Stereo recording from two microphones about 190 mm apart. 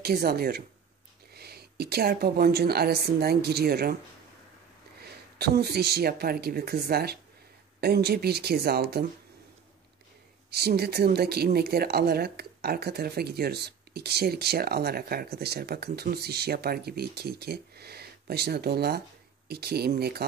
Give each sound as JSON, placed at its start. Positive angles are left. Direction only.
{"t": 0.0, "sound": "speech", "side_deg": -55}
{"t": 5.4, "sound": "speech", "side_deg": -55}
{"t": 10.5, "sound": "speech", "side_deg": -55}